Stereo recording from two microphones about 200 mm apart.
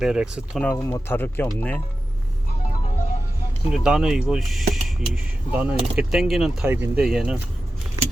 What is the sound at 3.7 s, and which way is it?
Speech, centre (ahead or behind).